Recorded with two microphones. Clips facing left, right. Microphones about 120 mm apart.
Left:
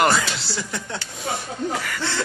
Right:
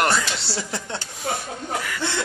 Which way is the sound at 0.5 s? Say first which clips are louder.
Even; 30° right (ahead or behind).